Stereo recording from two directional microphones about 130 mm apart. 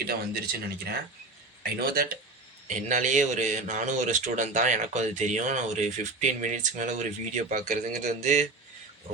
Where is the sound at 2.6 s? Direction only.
70° right (ahead or behind).